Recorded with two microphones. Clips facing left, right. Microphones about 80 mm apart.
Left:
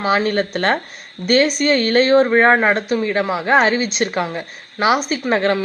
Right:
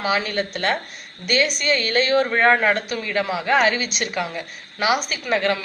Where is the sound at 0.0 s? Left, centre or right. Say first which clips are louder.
Left 5 dB; left.